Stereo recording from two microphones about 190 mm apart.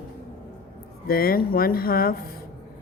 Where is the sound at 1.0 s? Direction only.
50° left (ahead or behind).